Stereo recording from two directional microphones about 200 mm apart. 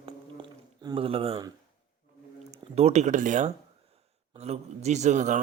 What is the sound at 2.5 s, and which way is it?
A man's voice, 30° right (ahead or behind).